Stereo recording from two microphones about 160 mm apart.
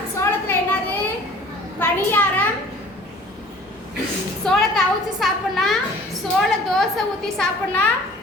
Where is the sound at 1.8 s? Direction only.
10° left (ahead or behind).